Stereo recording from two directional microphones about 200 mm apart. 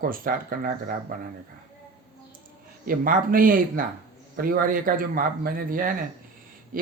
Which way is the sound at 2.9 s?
45° right (ahead or behind).